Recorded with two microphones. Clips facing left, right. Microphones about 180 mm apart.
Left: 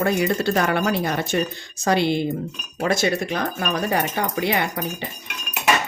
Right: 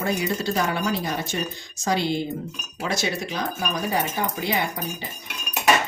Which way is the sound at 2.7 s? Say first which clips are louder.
Left 6 dB; 50° left (ahead or behind).